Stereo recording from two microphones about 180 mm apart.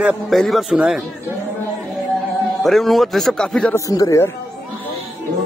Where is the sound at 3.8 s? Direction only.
20° left (ahead or behind).